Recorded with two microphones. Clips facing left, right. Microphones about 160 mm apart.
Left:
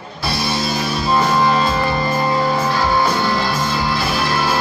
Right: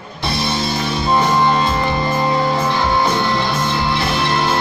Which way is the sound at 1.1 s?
20° right (ahead or behind).